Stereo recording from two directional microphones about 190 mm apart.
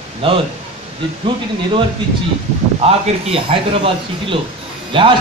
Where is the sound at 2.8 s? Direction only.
30° right (ahead or behind).